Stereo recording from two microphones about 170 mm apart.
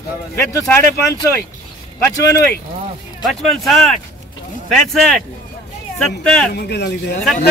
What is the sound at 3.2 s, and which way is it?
Speech, centre (ahead or behind).